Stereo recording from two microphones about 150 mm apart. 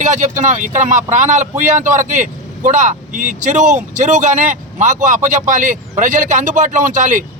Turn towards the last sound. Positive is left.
turn(degrees=-60)  # may be behind; listen again after turning